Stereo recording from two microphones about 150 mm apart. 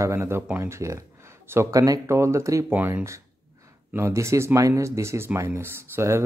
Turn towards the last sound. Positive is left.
turn(degrees=-15)  # may be behind; listen again after turning